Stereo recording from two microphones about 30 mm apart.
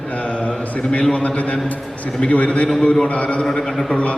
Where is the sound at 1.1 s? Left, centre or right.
Left.